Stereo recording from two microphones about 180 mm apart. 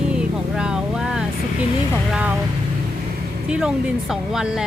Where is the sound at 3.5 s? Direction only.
5° right (ahead or behind).